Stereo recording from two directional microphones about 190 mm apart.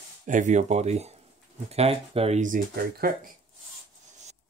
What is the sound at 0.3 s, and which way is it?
Speech, 40° right (ahead or behind).